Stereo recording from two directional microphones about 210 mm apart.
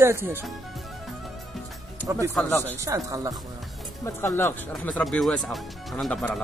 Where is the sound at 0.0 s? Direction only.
10° right (ahead or behind).